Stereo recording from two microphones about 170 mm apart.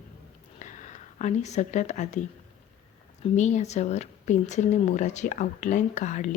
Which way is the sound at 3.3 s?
45° left (ahead or behind).